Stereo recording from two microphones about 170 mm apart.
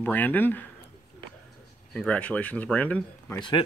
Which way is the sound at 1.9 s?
5° left (ahead or behind).